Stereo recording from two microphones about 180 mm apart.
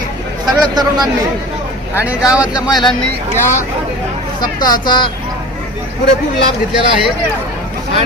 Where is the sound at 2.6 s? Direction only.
20° left (ahead or behind).